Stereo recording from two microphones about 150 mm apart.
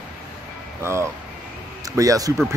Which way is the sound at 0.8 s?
20° right (ahead or behind).